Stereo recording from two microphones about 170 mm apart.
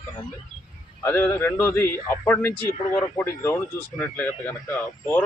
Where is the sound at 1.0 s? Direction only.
15° left (ahead or behind).